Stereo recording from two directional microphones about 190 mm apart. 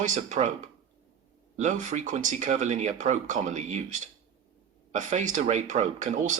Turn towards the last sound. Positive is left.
turn(degrees=-40)  # may be behind; listen again after turning